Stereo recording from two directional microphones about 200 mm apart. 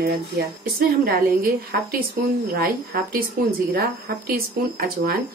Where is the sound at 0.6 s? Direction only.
45° right (ahead or behind).